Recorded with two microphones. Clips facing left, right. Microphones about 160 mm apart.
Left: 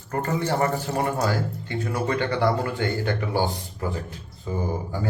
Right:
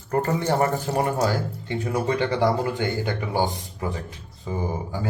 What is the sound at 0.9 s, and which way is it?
Speech, 30° right (ahead or behind).